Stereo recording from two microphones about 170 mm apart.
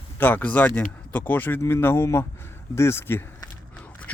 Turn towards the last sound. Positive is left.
turn(degrees=15)  # may be behind; listen again after turning